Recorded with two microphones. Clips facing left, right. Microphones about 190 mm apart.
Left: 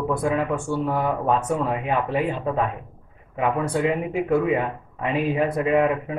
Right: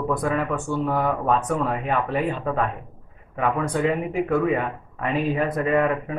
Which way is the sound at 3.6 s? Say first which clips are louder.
Even; 10° left (ahead or behind).